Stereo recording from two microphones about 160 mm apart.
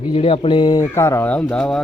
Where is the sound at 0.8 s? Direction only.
15° left (ahead or behind).